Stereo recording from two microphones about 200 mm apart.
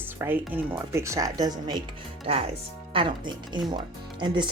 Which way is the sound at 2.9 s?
25° right (ahead or behind).